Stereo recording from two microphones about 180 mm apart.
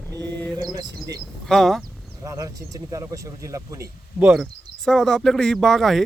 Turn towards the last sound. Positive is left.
turn(degrees=0)  # may be behind; listen again after turning